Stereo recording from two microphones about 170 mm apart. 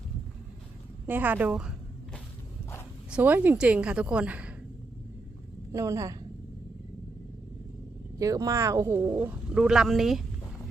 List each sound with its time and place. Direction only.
1.0 s speech: 10° right (ahead or behind)
3.1 s speech: 10° right (ahead or behind)
5.7 s a woman's voice: 20° right (ahead or behind)
8.2 s speech: 20° right (ahead or behind); by 10.2 s centre (ahead or behind)